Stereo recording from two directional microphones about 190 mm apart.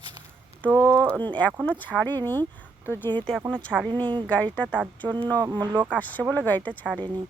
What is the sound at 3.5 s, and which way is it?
Speech, 5° left (ahead or behind).